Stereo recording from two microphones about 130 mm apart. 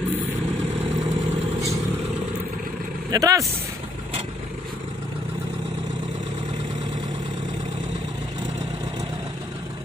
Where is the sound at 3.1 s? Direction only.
25° right (ahead or behind).